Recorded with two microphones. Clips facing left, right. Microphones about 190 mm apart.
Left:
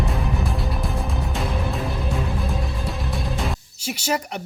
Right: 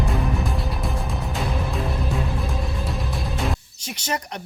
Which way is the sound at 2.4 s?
Centre (ahead or behind).